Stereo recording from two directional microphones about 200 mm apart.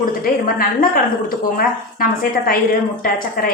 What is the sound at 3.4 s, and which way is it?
Speech, 45° left (ahead or behind).